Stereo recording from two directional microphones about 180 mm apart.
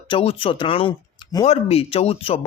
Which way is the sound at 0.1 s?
30° left (ahead or behind).